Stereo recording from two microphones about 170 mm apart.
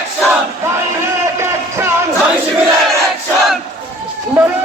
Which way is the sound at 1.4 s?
15° right (ahead or behind).